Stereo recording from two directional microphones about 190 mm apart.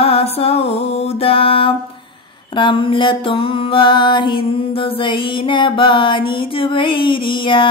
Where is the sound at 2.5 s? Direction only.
25° left (ahead or behind).